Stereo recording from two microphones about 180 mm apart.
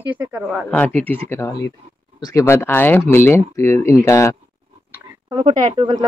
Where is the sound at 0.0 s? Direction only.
10° right (ahead or behind).